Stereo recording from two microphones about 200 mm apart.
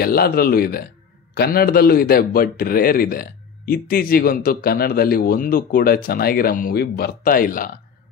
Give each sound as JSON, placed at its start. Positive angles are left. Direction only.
{"t": 0.0, "sound": "a man's voice", "side_deg": 50}